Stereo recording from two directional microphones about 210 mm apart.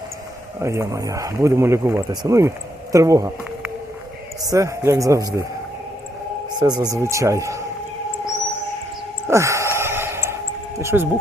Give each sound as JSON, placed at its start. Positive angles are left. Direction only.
{"t": 0.6, "sound": "speech", "side_deg": -15}
{"t": 4.4, "sound": "speech", "side_deg": -15}
{"t": 6.6, "sound": "speech", "side_deg": -20}
{"t": 9.2, "sound": "sigh", "side_deg": -15}
{"t": 10.8, "sound": "speech", "side_deg": -10}